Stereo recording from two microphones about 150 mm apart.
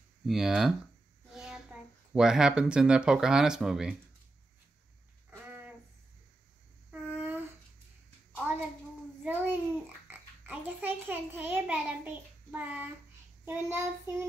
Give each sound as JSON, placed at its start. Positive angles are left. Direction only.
{"t": 0.2, "sound": "a child's voice", "side_deg": 0}
{"t": 5.3, "sound": "a sound", "side_deg": -10}
{"t": 6.9, "sound": "a sound", "side_deg": -10}
{"t": 9.2, "sound": "babbling", "side_deg": -10}
{"t": 10.0, "sound": "oink", "side_deg": -15}
{"t": 13.5, "sound": "child singing", "side_deg": -15}